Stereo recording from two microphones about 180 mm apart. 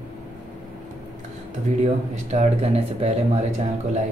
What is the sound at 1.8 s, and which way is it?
Speech, 35° right (ahead or behind).